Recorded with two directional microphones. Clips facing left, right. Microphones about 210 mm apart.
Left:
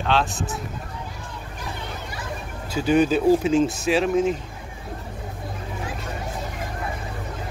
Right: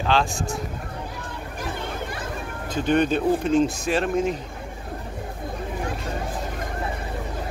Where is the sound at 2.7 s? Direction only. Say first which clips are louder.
Left 2 dB; 5° left (ahead or behind).